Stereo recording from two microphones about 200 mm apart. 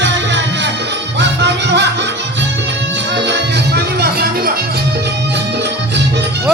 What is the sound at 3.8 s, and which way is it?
Music, 50° right (ahead or behind).